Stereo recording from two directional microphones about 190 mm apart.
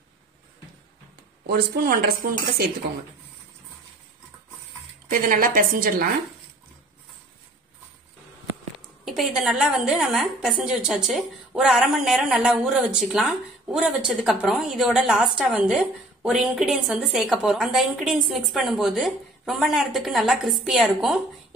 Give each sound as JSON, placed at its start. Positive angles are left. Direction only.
{"t": 1.5, "sound": "speech", "side_deg": -50}
{"t": 5.1, "sound": "speech", "side_deg": -45}
{"t": 9.0, "sound": "a woman's voice", "side_deg": 0}